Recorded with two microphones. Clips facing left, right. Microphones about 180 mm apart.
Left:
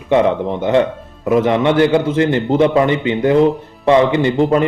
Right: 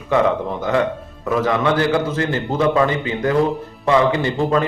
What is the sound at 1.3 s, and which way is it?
A man's voice, 25° left (ahead or behind).